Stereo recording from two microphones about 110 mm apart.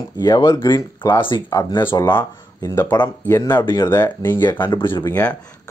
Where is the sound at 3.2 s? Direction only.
25° left (ahead or behind).